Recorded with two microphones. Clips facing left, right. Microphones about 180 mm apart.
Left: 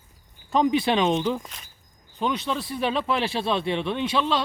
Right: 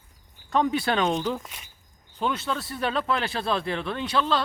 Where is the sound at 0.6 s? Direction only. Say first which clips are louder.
Left 3 dB; 20° left (ahead or behind).